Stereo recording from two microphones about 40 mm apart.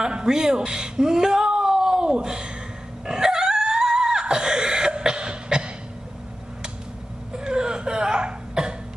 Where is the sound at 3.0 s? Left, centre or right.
Centre.